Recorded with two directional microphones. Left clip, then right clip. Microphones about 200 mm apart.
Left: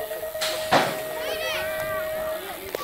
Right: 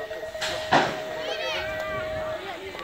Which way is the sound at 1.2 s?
35° right (ahead or behind).